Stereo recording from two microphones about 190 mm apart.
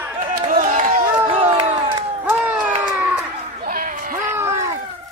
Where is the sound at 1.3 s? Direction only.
35° right (ahead or behind).